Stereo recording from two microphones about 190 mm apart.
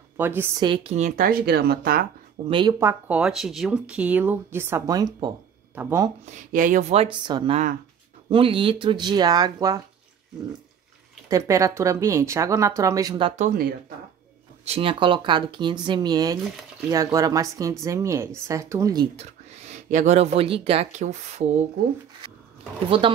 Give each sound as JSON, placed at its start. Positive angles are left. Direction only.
{"t": 0.2, "sound": "speech", "side_deg": -10}
{"t": 0.6, "sound": "speech", "side_deg": -25}
{"t": 0.9, "sound": "speech", "side_deg": -40}
{"t": 2.4, "sound": "speech", "side_deg": -25}
{"t": 2.8, "sound": "speech", "side_deg": -10}
{"t": 6.5, "sound": "speech", "side_deg": -45}
{"t": 11.2, "sound": "speech", "side_deg": -15}
{"t": 13.4, "sound": "speech", "side_deg": -45}
{"t": 14.6, "sound": "speech", "side_deg": -30}
{"t": 19.9, "sound": "speech", "side_deg": -40}
{"t": 22.8, "sound": "speech", "side_deg": -30}